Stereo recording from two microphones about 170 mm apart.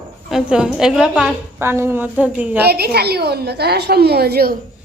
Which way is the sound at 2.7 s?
70° right (ahead or behind).